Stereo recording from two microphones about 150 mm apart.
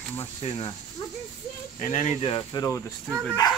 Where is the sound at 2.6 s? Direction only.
30° left (ahead or behind).